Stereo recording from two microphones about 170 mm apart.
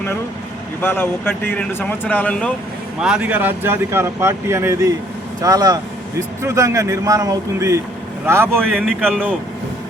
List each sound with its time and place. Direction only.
0.8 s speech: 15° left (ahead or behind)
3.0 s speech: 5° right (ahead or behind)
8.7 s a man's voice: centre (ahead or behind)